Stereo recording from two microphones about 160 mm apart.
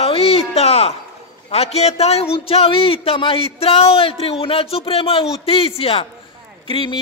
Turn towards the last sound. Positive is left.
turn(degrees=30)  # may be behind; listen again after turning